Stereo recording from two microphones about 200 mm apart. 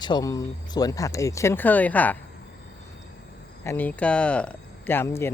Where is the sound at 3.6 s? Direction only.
10° left (ahead or behind).